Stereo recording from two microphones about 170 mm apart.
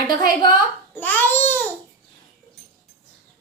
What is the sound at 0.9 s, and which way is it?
Speech, 10° left (ahead or behind).